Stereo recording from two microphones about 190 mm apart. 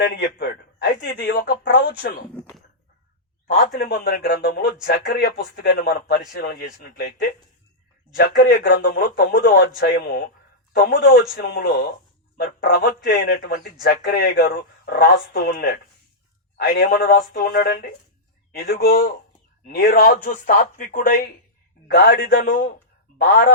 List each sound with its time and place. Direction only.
0.0 s speech: 60° left (ahead or behind)
2.3 s a sound: 5° left (ahead or behind)
3.4 s a man's voice: 50° left (ahead or behind)